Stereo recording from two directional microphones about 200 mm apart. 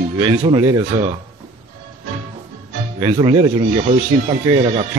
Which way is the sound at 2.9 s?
20° right (ahead or behind).